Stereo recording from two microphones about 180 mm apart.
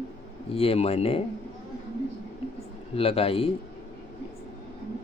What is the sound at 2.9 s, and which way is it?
Speech, 30° left (ahead or behind).